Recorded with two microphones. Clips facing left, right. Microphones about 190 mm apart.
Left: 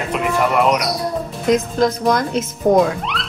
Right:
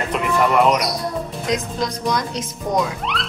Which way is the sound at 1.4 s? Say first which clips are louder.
Left 9 dB; 55° left (ahead or behind).